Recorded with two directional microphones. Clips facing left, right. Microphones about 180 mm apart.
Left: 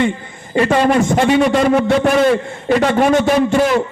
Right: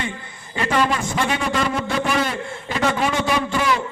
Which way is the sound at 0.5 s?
65° left (ahead or behind).